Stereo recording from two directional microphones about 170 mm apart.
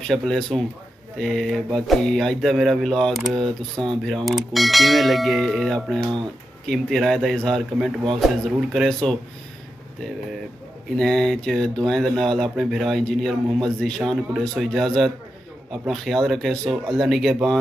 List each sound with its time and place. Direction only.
0.0 s speech: centre (ahead or behind)
11.0 s speech: centre (ahead or behind)